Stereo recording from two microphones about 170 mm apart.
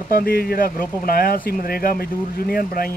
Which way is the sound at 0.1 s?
60° left (ahead or behind).